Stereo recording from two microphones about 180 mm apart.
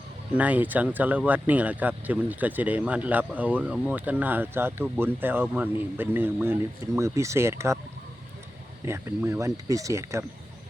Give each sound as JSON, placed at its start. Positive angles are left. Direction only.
{"t": 0.3, "sound": "speech", "side_deg": -10}
{"t": 8.8, "sound": "speech", "side_deg": -15}